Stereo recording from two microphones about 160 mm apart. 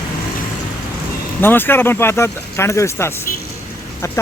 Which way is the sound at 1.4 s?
15° left (ahead or behind).